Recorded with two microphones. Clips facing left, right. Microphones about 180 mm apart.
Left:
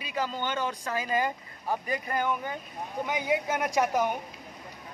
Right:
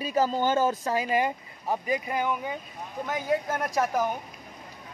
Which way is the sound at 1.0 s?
20° right (ahead or behind).